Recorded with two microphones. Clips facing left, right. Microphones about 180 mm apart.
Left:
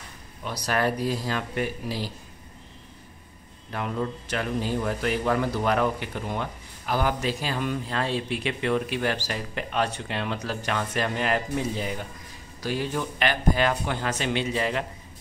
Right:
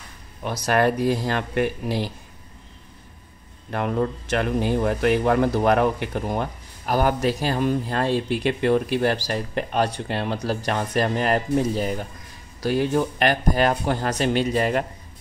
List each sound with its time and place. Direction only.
0.7 s speech: 55° right (ahead or behind)
3.7 s speech: 55° right (ahead or behind)